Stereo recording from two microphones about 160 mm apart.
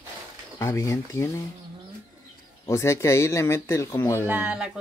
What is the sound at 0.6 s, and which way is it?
Speech, 15° left (ahead or behind).